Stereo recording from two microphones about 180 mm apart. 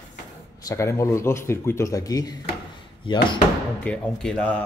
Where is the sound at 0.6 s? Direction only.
15° left (ahead or behind).